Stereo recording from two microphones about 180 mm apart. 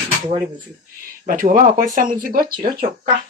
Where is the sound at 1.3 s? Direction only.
50° right (ahead or behind).